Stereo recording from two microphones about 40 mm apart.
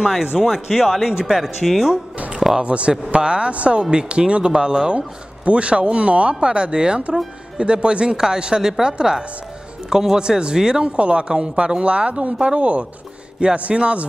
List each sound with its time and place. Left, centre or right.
0.2 s a woman's voice: centre
2.1 s music: right
2.6 s a woman's voice: right
11.0 s speech: right